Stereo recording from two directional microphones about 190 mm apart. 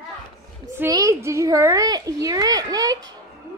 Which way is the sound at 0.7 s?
15° right (ahead or behind).